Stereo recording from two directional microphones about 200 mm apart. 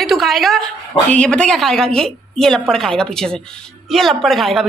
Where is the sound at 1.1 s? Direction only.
5° left (ahead or behind).